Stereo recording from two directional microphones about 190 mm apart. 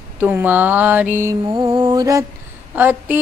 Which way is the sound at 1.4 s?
25° right (ahead or behind).